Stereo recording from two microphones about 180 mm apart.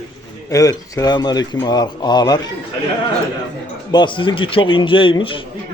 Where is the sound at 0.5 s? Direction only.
20° left (ahead or behind).